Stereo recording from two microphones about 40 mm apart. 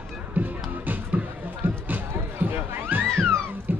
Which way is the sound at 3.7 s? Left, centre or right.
Right.